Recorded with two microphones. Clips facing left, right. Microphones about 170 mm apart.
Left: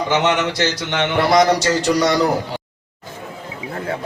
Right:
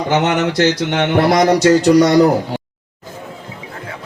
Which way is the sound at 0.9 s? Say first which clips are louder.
Even; 45° right (ahead or behind).